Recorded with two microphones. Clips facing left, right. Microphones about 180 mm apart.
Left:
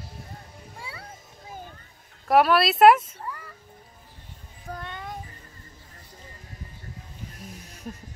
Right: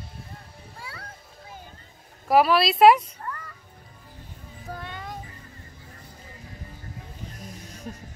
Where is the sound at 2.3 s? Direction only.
Centre (ahead or behind).